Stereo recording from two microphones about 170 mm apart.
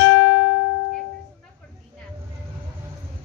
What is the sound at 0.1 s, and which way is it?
Music, 85° left.